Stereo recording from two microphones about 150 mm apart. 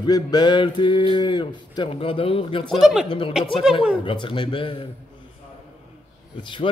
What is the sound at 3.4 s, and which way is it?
A man's voice, 35° left (ahead or behind).